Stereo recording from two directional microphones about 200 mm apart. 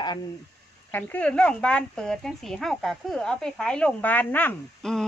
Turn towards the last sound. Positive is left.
turn(degrees=0)  # may be behind; listen again after turning